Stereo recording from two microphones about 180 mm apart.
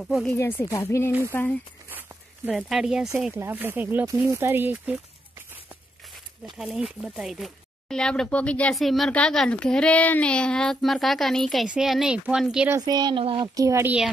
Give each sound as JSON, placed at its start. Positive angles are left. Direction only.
{"t": 0.0, "sound": "speech", "side_deg": 0}
{"t": 0.3, "sound": "speech", "side_deg": 15}
{"t": 1.9, "sound": "speech", "side_deg": -10}
{"t": 6.6, "sound": "speech", "side_deg": -5}
{"t": 12.6, "sound": "a woman's voice", "side_deg": -20}
{"t": 13.6, "sound": "speech", "side_deg": -15}